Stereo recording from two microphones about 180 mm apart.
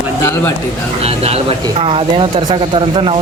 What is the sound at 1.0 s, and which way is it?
Speech, 35° right (ahead or behind).